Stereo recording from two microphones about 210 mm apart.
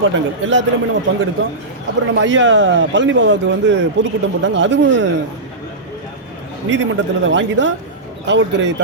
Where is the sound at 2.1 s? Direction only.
65° right (ahead or behind).